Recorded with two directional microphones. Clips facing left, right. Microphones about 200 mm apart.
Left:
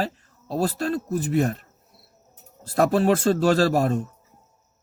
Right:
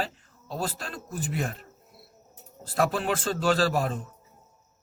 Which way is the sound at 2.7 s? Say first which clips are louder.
Left 7 dB; 40° left (ahead or behind).